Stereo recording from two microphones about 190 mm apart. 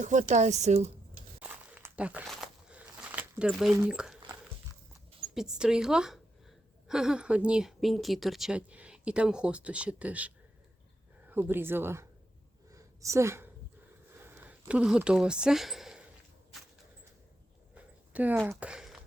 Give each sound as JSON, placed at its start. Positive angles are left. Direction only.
{"t": 0.0, "sound": "a woman's voice", "side_deg": -40}
{"t": 1.4, "sound": "a sound", "side_deg": -10}
{"t": 3.8, "sound": "speech", "side_deg": -5}
{"t": 5.3, "sound": "a woman's voice", "side_deg": -5}
{"t": 12.7, "sound": "a sound", "side_deg": -15}
{"t": 18.1, "sound": "speech", "side_deg": -5}